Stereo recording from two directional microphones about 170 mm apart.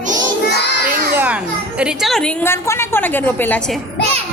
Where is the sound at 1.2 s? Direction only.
5° right (ahead or behind).